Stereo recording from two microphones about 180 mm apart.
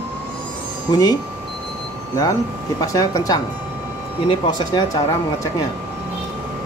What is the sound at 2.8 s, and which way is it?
Speech, 20° left (ahead or behind).